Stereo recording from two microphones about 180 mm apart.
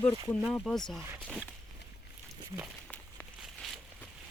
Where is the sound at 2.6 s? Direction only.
Centre (ahead or behind).